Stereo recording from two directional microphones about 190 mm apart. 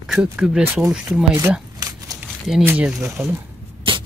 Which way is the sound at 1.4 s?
15° right (ahead or behind).